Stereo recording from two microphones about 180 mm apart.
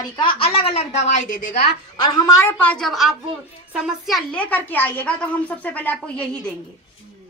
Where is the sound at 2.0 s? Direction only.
20° left (ahead or behind).